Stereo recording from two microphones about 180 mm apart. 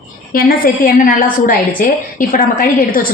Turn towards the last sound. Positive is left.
turn(degrees=50)  # may be behind; listen again after turning